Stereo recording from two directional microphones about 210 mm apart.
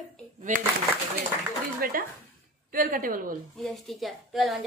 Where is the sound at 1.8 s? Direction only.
45° right (ahead or behind).